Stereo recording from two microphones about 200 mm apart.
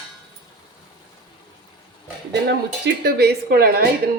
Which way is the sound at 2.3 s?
60° right (ahead or behind).